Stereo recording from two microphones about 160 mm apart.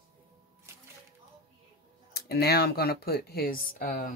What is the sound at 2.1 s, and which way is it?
Speech, 80° left.